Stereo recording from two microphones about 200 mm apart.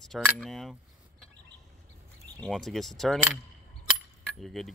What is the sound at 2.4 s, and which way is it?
Speech, centre (ahead or behind).